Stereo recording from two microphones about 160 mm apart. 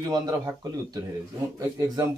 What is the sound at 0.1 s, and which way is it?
Speech, 25° right (ahead or behind).